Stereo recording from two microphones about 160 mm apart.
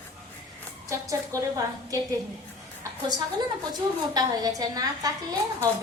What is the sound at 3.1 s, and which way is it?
A woman's voice, 25° right (ahead or behind).